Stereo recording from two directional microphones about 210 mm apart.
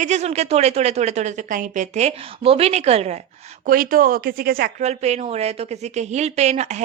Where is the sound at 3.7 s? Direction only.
40° right (ahead or behind).